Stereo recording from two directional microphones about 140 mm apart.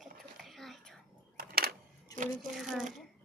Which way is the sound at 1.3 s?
90° right.